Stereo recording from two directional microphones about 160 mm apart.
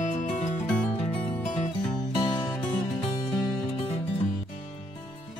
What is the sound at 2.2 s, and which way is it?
Music, 25° left (ahead or behind).